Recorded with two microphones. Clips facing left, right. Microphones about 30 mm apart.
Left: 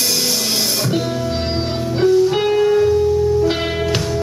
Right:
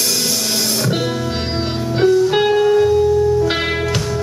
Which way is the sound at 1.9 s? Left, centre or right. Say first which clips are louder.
Right 1 dB; centre.